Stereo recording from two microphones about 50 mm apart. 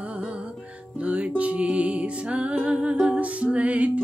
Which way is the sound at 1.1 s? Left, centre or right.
Right.